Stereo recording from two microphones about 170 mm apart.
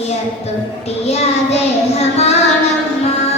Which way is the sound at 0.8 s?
40° left (ahead or behind).